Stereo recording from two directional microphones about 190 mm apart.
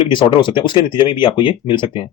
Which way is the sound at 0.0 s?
25° left (ahead or behind).